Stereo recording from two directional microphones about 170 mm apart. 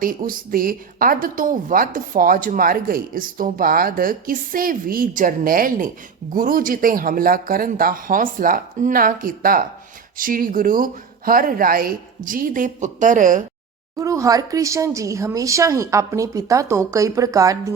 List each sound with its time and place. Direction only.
0.0 s a woman's voice: 55° right (ahead or behind)
14.0 s speech: 20° right (ahead or behind)